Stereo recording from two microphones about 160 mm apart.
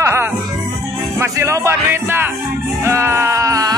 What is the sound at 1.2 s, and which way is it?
A man's voice, 15° right (ahead or behind).